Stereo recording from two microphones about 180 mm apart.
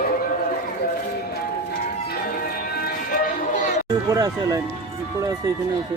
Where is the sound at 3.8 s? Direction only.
20° right (ahead or behind).